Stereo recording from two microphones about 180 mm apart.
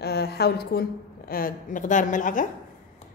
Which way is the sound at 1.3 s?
50° left (ahead or behind).